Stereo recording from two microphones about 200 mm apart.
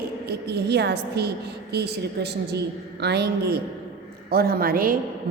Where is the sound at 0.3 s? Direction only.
55° right (ahead or behind).